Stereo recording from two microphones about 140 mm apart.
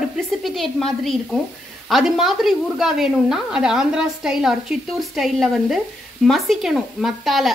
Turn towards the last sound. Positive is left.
turn(degrees=0)  # may be behind; listen again after turning